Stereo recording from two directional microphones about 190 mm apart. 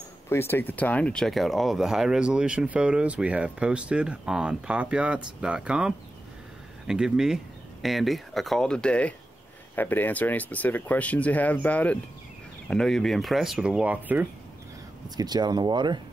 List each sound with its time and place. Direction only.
0.3 s speech: 10° left (ahead or behind); by 14.2 s 10° right (ahead or behind)
15.0 s speech: 20° right (ahead or behind)